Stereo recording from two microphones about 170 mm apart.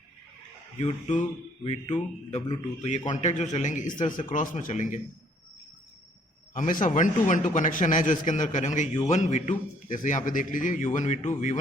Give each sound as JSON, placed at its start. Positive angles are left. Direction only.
{"t": 0.8, "sound": "a man's voice", "side_deg": 45}
{"t": 6.5, "sound": "a man's voice", "side_deg": 50}